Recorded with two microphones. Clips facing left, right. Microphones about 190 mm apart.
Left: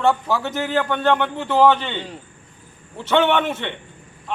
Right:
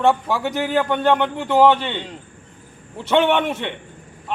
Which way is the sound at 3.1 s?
10° right (ahead or behind).